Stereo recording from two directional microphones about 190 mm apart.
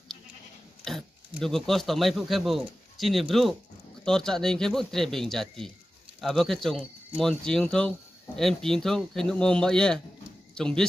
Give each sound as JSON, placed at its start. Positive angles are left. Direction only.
{"t": 0.8, "sound": "speech", "side_deg": 0}